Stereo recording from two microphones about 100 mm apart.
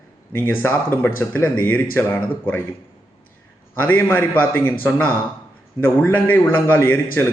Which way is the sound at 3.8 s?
15° left (ahead or behind).